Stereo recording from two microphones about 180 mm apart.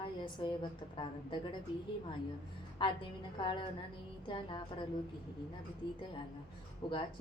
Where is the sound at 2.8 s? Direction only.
25° left (ahead or behind).